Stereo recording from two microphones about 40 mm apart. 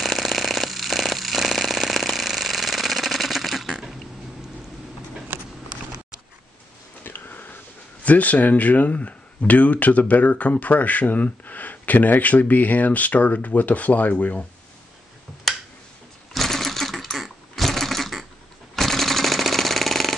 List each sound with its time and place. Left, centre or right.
0.0 s jackhammer: centre
5.3 s a sound: right
7.0 s sniff: left
8.0 s speech: left
15.5 s a sound: centre
16.3 s sewing machine: centre
18.8 s machine gun: centre